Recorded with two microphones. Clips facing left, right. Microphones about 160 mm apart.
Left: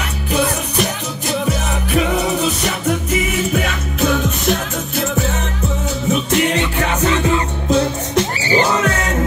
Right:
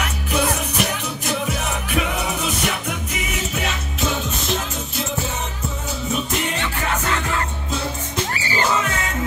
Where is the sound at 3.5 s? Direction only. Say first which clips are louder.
Left 6 dB; 55° left (ahead or behind).